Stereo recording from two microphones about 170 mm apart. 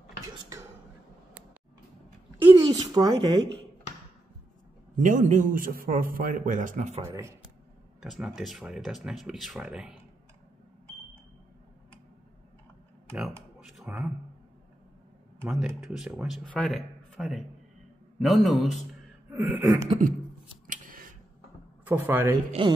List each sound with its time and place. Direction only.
2.4 s speech: 20° right (ahead or behind)
4.9 s a man's voice: 50° right (ahead or behind)
7.0 s throat clearing: 15° right (ahead or behind)
8.0 s speech: 5° right (ahead or behind)
13.1 s a sound: 5° right (ahead or behind)
15.5 s speech: 5° right (ahead or behind)
19.3 s throat clearing: 15° right (ahead or behind)
20.6 s a sound: 50° right (ahead or behind)
21.8 s throat clearing: 10° right (ahead or behind)
22.5 s speech: 30° right (ahead or behind)